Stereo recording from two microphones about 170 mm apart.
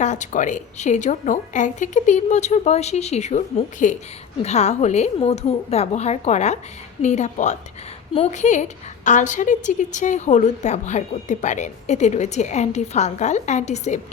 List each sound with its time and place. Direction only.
0.0 s a woman's voice: 45° left (ahead or behind)